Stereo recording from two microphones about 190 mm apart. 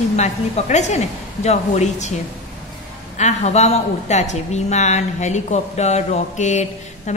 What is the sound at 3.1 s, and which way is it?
A woman's voice, 35° left (ahead or behind).